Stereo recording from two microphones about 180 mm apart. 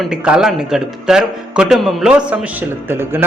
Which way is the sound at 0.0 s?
5° right (ahead or behind).